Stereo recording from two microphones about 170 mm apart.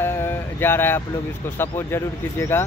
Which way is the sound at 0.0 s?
15° left (ahead or behind).